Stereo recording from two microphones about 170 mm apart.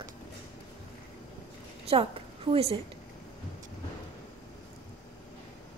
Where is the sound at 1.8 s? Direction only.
35° right (ahead or behind).